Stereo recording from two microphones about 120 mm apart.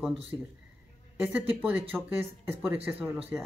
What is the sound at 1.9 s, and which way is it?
Speech, 15° right (ahead or behind).